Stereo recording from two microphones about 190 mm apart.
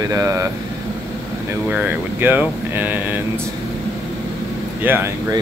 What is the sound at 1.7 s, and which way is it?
Speech, 10° right (ahead or behind).